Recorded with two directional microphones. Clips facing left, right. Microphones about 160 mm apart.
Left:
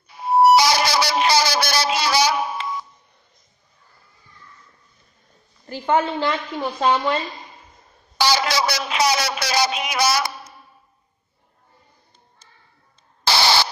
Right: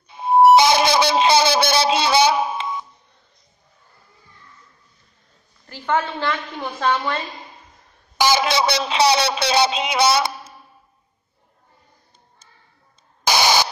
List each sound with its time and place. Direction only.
0.1 s music: 25° right (ahead or behind)
0.6 s a sound: 20° right (ahead or behind)
5.7 s a woman's voice: 15° left (ahead or behind)
8.2 s a woman's voice: 20° right (ahead or behind)
13.2 s static: 15° right (ahead or behind)